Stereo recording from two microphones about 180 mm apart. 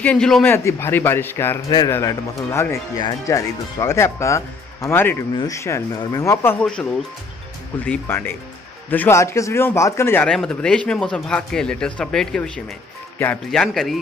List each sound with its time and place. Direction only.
0.0 s a man's voice: 5° left (ahead or behind)